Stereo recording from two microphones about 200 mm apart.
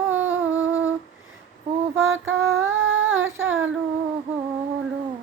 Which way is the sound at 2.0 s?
75° right (ahead or behind).